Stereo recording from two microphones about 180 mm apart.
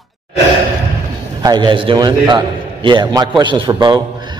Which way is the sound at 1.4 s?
25° right (ahead or behind).